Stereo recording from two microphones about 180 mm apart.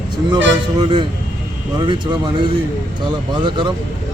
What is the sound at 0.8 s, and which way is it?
Speech, 25° right (ahead or behind).